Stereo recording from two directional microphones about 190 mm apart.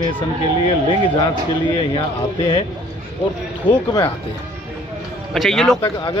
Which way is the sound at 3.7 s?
25° left (ahead or behind).